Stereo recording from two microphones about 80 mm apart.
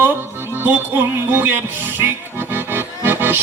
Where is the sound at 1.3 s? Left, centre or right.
Right.